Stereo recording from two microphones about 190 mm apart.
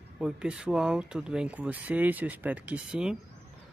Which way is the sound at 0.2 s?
5° right (ahead or behind).